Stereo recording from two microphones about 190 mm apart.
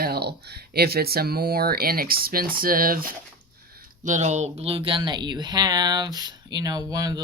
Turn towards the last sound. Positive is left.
turn(degrees=-20)  # may be behind; listen again after turning